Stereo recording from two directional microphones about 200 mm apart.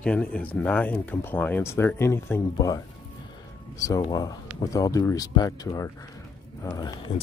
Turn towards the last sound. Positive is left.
turn(degrees=20)  # may be behind; listen again after turning